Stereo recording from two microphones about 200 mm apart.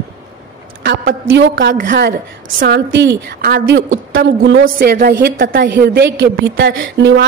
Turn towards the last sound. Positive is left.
turn(degrees=-60)  # may be behind; listen again after turning